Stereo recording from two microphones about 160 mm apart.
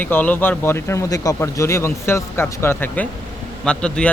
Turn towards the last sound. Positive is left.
turn(degrees=5)  # may be behind; listen again after turning